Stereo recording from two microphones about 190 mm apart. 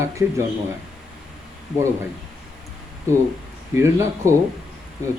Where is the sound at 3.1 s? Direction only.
15° right (ahead or behind).